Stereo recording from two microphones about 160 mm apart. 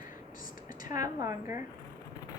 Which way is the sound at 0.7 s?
55° left (ahead or behind).